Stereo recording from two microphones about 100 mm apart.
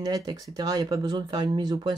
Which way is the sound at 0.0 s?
40° right (ahead or behind).